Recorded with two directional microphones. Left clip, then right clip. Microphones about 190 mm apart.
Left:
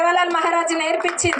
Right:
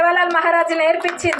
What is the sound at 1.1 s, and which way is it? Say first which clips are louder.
Speech: right 1 dB; 25° right (ahead or behind).